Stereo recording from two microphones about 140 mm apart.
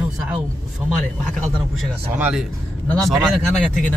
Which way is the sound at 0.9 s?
5° left (ahead or behind).